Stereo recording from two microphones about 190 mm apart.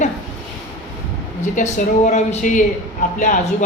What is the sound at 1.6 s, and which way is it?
A woman's voice, 40° left (ahead or behind).